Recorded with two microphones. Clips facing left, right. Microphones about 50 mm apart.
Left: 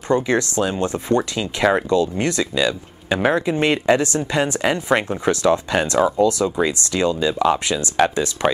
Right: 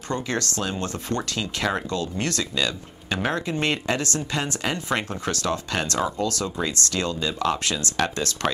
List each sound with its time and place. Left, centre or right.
0.1 s speech: left